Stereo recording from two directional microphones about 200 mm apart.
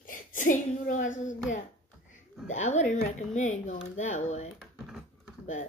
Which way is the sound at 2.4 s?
35° left (ahead or behind).